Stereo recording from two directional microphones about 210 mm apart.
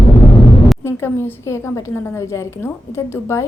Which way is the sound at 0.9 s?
10° left (ahead or behind).